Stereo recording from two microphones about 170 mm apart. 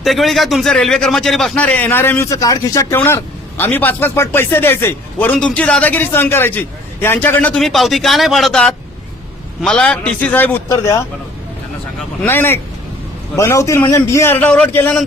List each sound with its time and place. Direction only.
0.0 s a man's voice: centre (ahead or behind); by 11.0 s 20° left (ahead or behind)
12.2 s speech: 15° left (ahead or behind)